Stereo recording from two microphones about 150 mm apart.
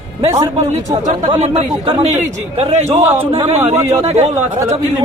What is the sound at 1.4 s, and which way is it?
A man's voice, 45° right (ahead or behind).